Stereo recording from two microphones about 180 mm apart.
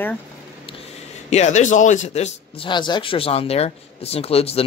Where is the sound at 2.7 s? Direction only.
25° left (ahead or behind).